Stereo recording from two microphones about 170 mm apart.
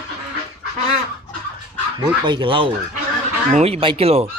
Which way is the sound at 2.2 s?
30° right (ahead or behind).